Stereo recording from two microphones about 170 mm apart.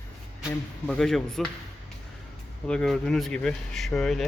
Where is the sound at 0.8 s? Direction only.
5° left (ahead or behind).